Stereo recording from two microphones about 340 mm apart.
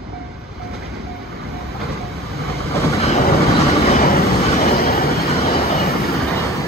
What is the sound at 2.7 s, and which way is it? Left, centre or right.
Train, centre.